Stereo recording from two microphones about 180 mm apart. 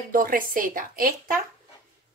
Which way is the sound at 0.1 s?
50° right (ahead or behind).